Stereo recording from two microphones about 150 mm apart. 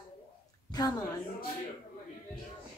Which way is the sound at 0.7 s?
25° left (ahead or behind).